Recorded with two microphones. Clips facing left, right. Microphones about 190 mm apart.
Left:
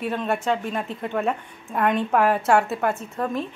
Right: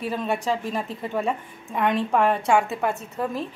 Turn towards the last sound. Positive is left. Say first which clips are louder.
# left 1 dB
turn(degrees=-5)  # may be behind; listen again after turning